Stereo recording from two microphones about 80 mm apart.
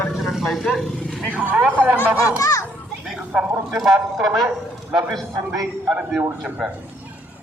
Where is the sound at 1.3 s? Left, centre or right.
Right.